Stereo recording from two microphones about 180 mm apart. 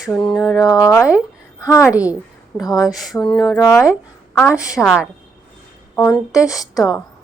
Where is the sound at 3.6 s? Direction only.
15° left (ahead or behind).